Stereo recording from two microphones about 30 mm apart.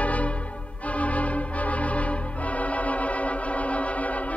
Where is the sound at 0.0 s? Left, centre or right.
Left.